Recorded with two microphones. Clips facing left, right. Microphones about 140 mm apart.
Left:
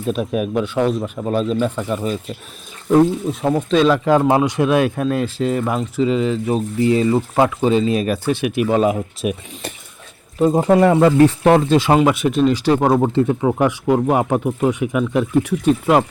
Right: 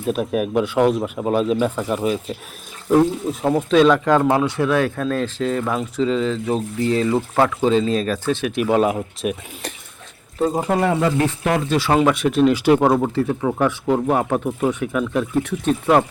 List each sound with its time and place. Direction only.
0.1 s speech: centre (ahead or behind)
3.4 s speech: centre (ahead or behind)
8.7 s speech: centre (ahead or behind)
10.7 s speech: 40° left (ahead or behind)
12.1 s speech: centre (ahead or behind)
12.9 s speech: 20° left (ahead or behind)